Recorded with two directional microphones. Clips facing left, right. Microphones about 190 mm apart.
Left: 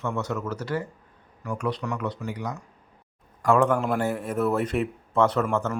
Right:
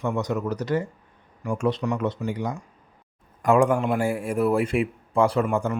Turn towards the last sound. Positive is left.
turn(degrees=-15)  # may be behind; listen again after turning